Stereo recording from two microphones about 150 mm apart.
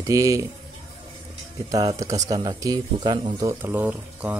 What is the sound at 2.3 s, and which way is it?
Speech, 25° right (ahead or behind).